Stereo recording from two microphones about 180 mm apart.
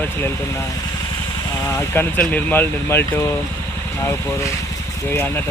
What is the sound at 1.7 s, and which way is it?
Speech, 15° left (ahead or behind).